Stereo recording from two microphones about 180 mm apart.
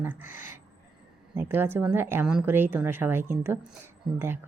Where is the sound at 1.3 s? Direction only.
10° right (ahead or behind).